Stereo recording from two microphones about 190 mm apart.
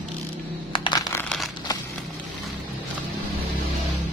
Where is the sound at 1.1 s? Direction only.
10° left (ahead or behind).